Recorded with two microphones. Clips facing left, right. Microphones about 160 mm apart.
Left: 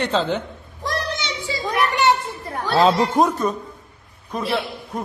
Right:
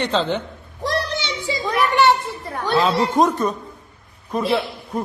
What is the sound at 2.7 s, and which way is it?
Speech, 30° left (ahead or behind).